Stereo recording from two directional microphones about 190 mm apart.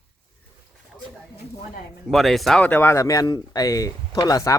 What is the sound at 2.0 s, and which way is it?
Speech, centre (ahead or behind).